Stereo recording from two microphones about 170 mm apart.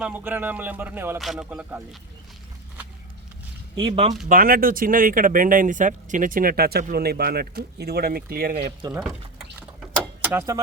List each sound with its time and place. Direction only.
0.0 s speech: 10° right (ahead or behind)
3.8 s speech: 35° right (ahead or behind)
4.3 s speech: 55° right (ahead or behind)
9.0 s a sound: 5° right (ahead or behind)
10.0 s vehicle: 15° right (ahead or behind)